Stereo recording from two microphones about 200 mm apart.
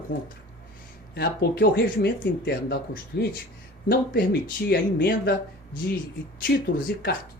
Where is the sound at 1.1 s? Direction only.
55° left (ahead or behind).